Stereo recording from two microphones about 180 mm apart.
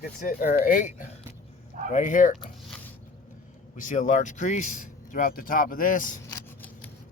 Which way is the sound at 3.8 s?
45° left (ahead or behind).